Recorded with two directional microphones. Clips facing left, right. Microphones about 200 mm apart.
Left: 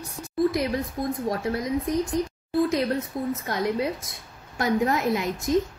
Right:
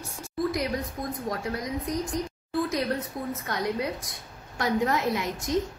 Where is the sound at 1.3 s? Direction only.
25° left (ahead or behind).